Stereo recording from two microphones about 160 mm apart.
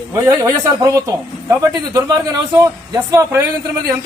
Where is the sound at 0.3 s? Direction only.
25° right (ahead or behind).